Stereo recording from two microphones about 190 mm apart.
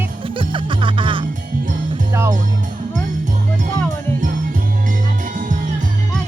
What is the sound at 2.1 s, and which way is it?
Music, 15° right (ahead or behind).